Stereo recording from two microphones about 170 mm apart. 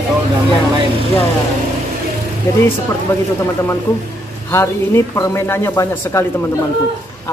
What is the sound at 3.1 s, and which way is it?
A man's voice, 10° left (ahead or behind).